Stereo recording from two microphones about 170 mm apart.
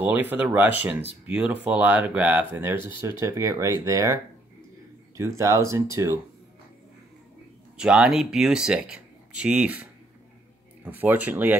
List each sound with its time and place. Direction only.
0.0 s speech: 10° right (ahead or behind)
5.4 s speech: 20° right (ahead or behind)
7.7 s speech: 5° right (ahead or behind)